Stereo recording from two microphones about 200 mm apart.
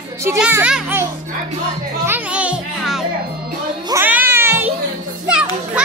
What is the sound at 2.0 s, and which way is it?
Music, 10° right (ahead or behind).